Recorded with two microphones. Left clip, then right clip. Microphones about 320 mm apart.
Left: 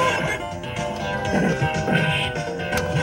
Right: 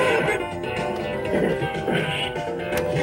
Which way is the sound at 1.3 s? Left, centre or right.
Left.